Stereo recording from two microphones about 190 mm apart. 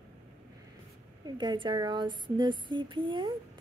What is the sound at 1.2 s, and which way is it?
Speech, 25° right (ahead or behind).